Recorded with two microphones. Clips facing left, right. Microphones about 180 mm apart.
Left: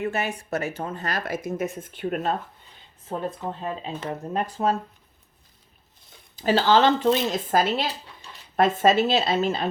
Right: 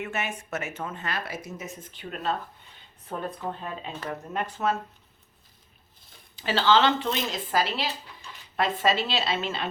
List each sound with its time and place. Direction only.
0.0 s speech: 35° left (ahead or behind); by 2.3 s 50° left (ahead or behind)
3.1 s speech: 25° left (ahead or behind)
6.3 s speech: 40° left (ahead or behind)